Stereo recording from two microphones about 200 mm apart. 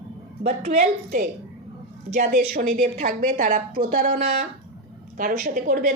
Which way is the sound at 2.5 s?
45° right (ahead or behind).